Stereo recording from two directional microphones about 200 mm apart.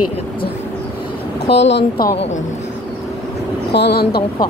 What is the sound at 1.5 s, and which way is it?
Speech, 60° left (ahead or behind).